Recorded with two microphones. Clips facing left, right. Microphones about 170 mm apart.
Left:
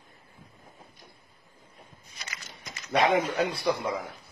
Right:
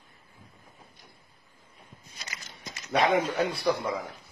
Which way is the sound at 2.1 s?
25° right (ahead or behind).